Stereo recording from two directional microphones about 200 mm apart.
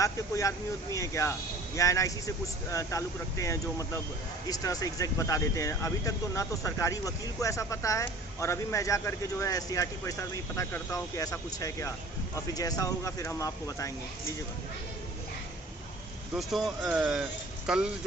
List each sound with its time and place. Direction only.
0.0 s speech: 15° left (ahead or behind)
16.3 s speech: centre (ahead or behind)